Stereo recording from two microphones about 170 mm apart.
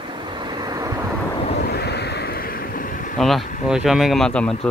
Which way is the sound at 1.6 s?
75° left (ahead or behind).